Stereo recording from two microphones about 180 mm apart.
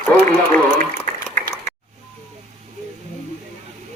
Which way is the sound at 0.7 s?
45° right (ahead or behind).